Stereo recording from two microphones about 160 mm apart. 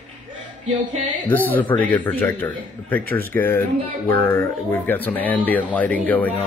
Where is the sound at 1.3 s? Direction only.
10° left (ahead or behind).